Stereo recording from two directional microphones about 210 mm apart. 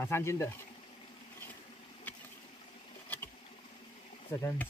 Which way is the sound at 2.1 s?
5° left (ahead or behind).